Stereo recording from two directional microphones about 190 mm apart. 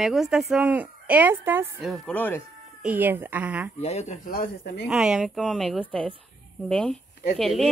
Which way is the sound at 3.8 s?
35° left (ahead or behind).